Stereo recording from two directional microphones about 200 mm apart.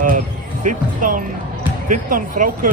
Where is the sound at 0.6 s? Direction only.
40° right (ahead or behind).